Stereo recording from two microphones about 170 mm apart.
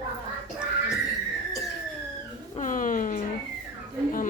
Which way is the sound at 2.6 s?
50° left (ahead or behind).